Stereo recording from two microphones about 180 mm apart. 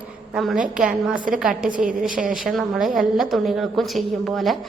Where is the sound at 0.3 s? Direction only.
Centre (ahead or behind).